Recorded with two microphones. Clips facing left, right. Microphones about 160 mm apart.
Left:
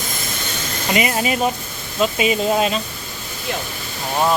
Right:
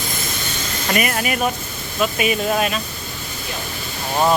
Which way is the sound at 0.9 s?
20° left (ahead or behind).